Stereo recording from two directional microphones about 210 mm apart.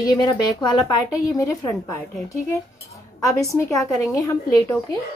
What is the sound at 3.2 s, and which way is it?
A woman's voice, 15° left (ahead or behind).